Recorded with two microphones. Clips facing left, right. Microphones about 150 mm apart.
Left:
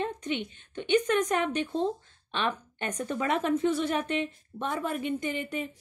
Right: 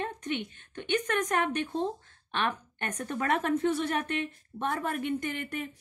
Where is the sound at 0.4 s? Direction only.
55° right (ahead or behind).